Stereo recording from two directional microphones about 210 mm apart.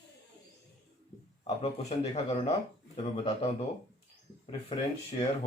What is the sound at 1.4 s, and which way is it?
A man's voice, 30° left (ahead or behind).